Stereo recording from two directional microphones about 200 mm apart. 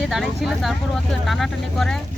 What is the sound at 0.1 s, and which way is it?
Speech, centre (ahead or behind).